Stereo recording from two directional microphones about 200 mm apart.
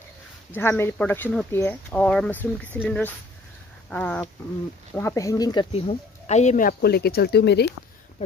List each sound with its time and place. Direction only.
0.5 s speech: 10° left (ahead or behind)
3.9 s speech: 10° left (ahead or behind); by 7.7 s 55° left (ahead or behind)